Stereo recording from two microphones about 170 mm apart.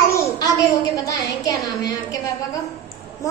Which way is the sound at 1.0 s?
20° left (ahead or behind).